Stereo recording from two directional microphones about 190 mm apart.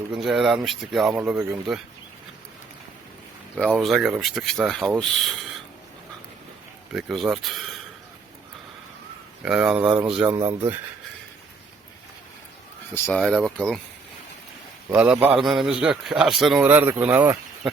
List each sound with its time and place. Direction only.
0.1 s speech: centre (ahead or behind)
3.8 s speech: centre (ahead or behind)
6.9 s speech: centre (ahead or behind)
9.4 s speech: 5° right (ahead or behind)
10.2 s speech: 20° right (ahead or behind)
12.9 s speech: 5° left (ahead or behind)
14.8 s speech: 5° right (ahead or behind)